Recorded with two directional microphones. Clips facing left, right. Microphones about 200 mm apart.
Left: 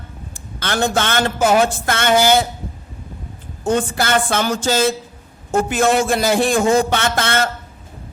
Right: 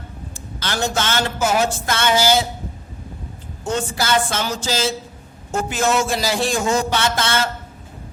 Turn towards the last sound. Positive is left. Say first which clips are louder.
# left 2 dB
turn(degrees=55)  # may be behind; listen again after turning